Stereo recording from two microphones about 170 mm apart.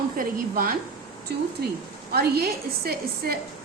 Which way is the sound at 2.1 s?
65° right (ahead or behind).